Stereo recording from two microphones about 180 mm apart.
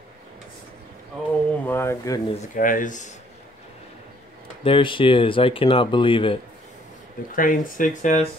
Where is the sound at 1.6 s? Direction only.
15° left (ahead or behind).